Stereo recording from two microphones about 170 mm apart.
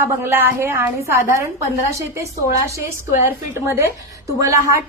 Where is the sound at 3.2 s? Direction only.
15° right (ahead or behind).